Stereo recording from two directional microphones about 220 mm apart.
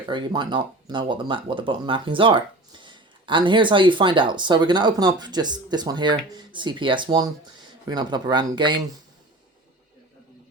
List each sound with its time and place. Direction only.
0.1 s speech: 20° right (ahead or behind)